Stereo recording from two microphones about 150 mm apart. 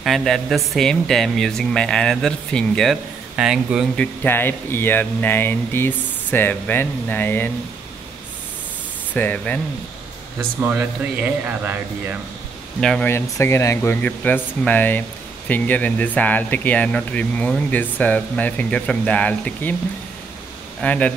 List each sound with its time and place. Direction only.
0.0 s a man's voice: centre (ahead or behind)
3.9 s speech: 10° left (ahead or behind)
9.1 s speech: 10° left (ahead or behind)
10.6 s speech: 15° right (ahead or behind)
12.8 s a man's voice: 5° left (ahead or behind)
13.1 s speech: 15° left (ahead or behind)
20.8 s speech: 10° left (ahead or behind)